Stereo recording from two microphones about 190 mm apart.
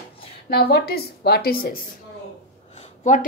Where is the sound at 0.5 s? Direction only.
55° left (ahead or behind).